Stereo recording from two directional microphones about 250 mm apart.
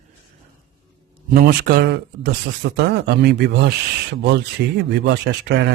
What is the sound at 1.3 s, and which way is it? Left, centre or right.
Speech, right.